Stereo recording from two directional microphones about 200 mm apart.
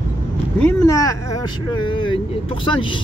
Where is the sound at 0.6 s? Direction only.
10° left (ahead or behind).